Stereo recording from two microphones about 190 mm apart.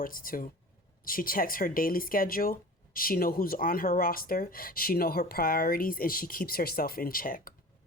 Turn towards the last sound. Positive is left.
turn(degrees=50)  # may be behind; listen again after turning